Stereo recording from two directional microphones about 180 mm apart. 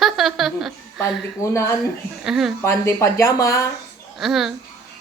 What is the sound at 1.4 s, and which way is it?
Speech, 15° left (ahead or behind).